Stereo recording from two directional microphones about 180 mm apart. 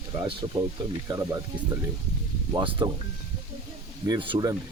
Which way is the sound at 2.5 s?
30° right (ahead or behind).